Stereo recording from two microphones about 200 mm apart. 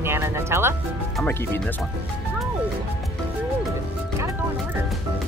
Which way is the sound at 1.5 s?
5° left (ahead or behind).